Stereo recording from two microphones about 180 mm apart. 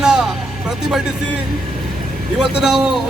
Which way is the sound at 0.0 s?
5° right (ahead or behind).